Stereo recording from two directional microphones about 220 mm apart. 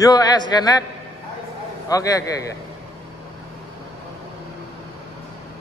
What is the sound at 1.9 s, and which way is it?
Speech, 15° left (ahead or behind).